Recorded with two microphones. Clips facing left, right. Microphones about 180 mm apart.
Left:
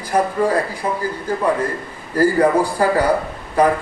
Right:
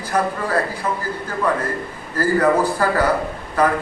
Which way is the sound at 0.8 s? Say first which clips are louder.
Left 2 dB; 30° left (ahead or behind).